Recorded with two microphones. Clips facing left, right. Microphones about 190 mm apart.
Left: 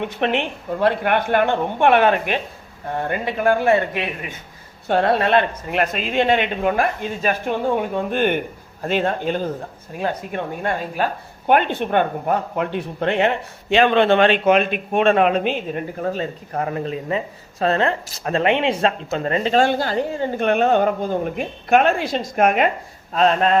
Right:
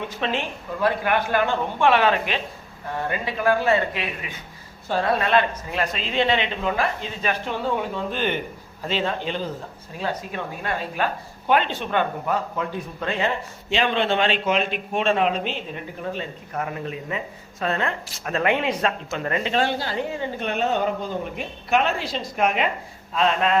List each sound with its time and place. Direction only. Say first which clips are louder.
0.0 s a woman's voice: left 5 dB; 60° left (ahead or behind); by 23.6 s 40° left (ahead or behind)